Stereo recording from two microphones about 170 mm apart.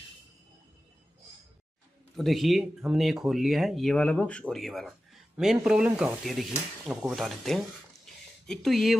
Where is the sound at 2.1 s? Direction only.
Centre (ahead or behind).